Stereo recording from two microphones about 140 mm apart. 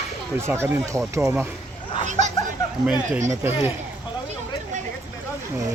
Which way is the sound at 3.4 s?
15° right (ahead or behind).